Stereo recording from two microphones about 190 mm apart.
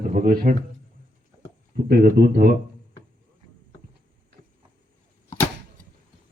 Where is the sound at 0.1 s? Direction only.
50° right (ahead or behind).